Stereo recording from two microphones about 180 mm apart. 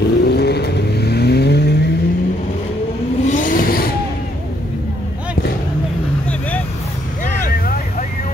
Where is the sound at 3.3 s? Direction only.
50° left (ahead or behind).